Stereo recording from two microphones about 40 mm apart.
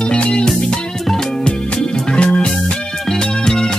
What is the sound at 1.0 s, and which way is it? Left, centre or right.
Music, centre.